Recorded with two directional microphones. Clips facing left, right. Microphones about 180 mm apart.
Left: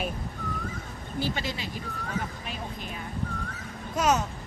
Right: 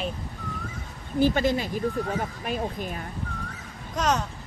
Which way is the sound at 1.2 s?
50° right (ahead or behind).